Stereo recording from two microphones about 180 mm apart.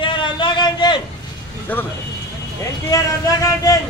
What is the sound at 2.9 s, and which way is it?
Speech, 20° left (ahead or behind).